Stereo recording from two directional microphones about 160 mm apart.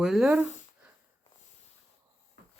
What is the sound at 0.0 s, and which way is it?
Speech, centre (ahead or behind).